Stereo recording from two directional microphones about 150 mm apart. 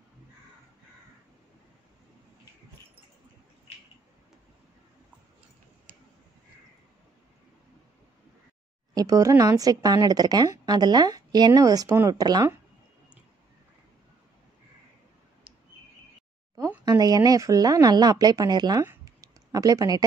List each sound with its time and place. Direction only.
8.9 s a woman's voice: 25° right (ahead or behind)
16.8 s a woman's voice: 25° right (ahead or behind)
18.9 s a sound: 25° right (ahead or behind)